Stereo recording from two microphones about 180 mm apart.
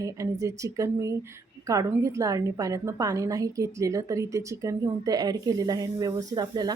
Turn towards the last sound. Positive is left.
turn(degrees=-20)  # may be behind; listen again after turning